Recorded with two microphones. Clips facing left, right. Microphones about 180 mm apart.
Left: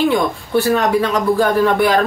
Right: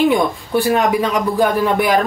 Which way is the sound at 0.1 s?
15° right (ahead or behind).